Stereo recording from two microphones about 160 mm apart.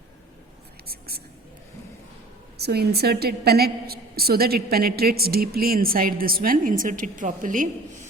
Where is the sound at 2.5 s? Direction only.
85° right.